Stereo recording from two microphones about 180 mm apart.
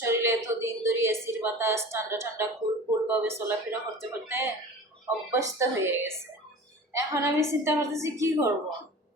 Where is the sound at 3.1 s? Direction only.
10° right (ahead or behind).